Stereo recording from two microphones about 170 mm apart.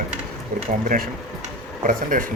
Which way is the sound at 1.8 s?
50° right (ahead or behind).